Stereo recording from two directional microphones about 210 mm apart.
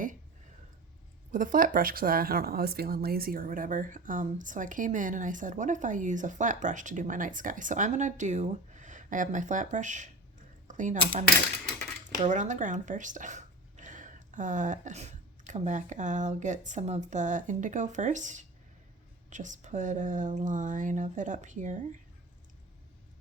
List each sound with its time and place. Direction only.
1.3 s speech: 40° right (ahead or behind)
10.7 s a sound: 35° right (ahead or behind)
10.9 s speech: 25° right (ahead or behind)
12.2 s speech: 35° right (ahead or behind)